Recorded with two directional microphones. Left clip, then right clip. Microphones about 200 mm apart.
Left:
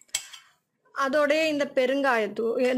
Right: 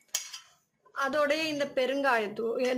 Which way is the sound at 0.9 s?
30° left (ahead or behind).